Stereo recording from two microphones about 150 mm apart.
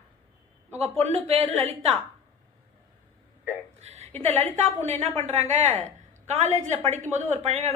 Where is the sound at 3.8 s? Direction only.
45° right (ahead or behind).